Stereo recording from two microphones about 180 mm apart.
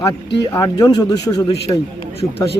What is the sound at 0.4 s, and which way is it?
Speech, 20° left (ahead or behind).